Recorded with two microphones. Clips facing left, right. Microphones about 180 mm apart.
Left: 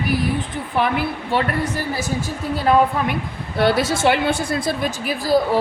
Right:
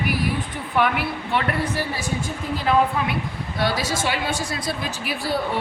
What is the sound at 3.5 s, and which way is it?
A woman's voice, 60° left (ahead or behind).